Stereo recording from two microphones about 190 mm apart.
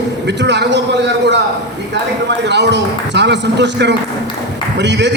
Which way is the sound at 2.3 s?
65° right (ahead or behind).